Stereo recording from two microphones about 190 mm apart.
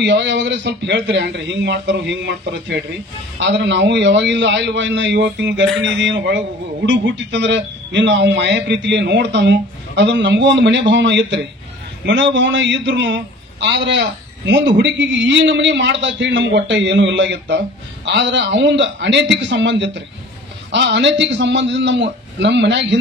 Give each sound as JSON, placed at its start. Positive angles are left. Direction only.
{"t": 0.0, "sound": "a man's voice", "side_deg": -70}